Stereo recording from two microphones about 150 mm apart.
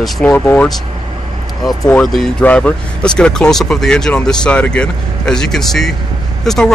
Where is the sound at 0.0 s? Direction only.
10° left (ahead or behind).